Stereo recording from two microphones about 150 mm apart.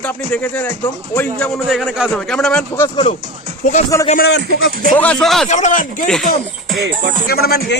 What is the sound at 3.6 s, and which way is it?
Speech, 50° left (ahead or behind).